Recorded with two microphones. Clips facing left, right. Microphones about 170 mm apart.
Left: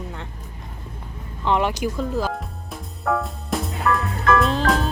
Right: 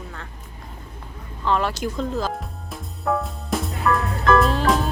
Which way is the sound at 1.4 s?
15° left (ahead or behind).